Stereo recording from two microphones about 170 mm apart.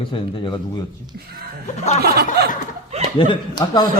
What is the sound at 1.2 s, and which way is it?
Speech, 65° right (ahead or behind).